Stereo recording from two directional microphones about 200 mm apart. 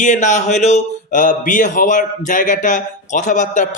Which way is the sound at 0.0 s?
35° left (ahead or behind).